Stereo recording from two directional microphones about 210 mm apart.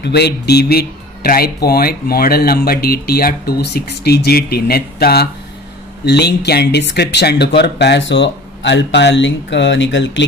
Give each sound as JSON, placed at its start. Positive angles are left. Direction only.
{"t": 0.0, "sound": "speech", "side_deg": 50}